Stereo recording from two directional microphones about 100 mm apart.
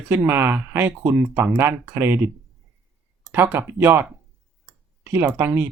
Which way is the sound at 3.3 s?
20° right (ahead or behind).